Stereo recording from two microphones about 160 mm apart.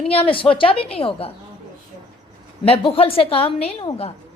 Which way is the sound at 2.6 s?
35° left (ahead or behind).